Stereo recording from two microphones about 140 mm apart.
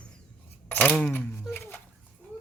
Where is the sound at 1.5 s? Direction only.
15° left (ahead or behind).